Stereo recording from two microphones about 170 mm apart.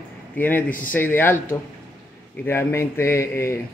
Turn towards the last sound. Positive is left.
turn(degrees=15)  # may be behind; listen again after turning